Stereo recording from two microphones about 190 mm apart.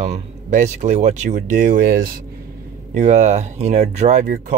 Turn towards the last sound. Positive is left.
turn(degrees=-40)  # may be behind; listen again after turning